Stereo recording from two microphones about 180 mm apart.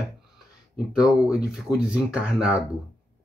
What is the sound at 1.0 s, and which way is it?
Speech, 5° right (ahead or behind).